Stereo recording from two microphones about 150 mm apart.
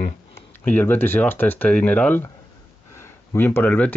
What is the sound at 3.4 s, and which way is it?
Speech, 15° left (ahead or behind).